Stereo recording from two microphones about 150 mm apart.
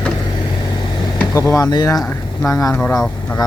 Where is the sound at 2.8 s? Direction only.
5° left (ahead or behind).